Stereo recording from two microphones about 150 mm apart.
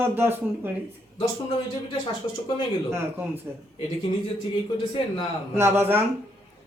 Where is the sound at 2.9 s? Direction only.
15° right (ahead or behind).